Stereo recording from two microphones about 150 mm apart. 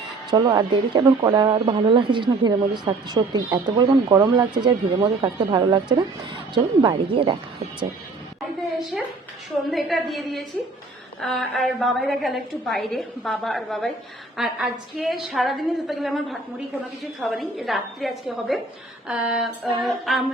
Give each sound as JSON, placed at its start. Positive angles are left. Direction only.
{"t": 0.3, "sound": "speech", "side_deg": -30}
{"t": 1.5, "sound": "speech", "side_deg": -35}
{"t": 8.9, "sound": "a woman's voice", "side_deg": 0}